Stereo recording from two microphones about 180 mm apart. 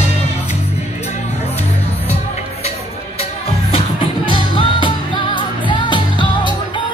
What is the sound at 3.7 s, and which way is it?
Music, 30° left (ahead or behind).